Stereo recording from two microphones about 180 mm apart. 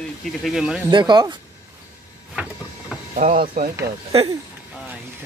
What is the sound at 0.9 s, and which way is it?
Speech, 25° right (ahead or behind).